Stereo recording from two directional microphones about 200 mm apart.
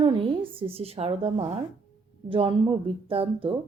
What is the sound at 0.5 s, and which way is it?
A woman's voice, 30° right (ahead or behind).